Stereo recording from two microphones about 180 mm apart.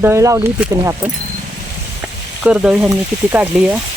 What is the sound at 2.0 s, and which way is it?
Frying, 5° right (ahead or behind).